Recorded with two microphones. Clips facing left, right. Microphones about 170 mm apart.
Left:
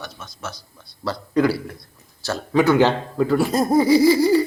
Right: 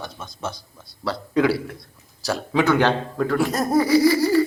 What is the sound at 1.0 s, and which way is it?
A man's voice, centre (ahead or behind).